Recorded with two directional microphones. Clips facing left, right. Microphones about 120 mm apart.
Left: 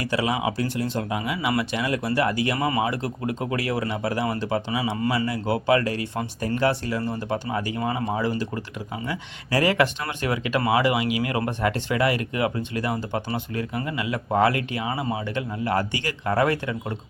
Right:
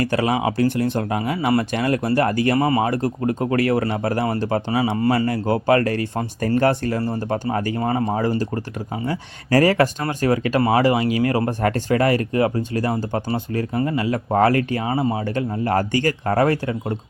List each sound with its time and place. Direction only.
0.0 s speech: 50° right (ahead or behind)